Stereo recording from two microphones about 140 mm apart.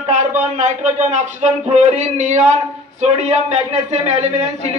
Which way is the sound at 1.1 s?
55° right (ahead or behind).